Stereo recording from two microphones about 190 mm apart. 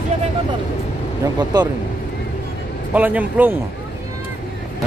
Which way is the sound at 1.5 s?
20° right (ahead or behind).